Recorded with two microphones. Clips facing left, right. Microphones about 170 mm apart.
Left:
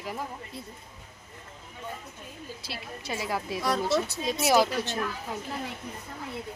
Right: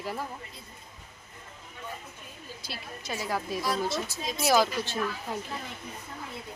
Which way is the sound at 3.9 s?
65° left (ahead or behind).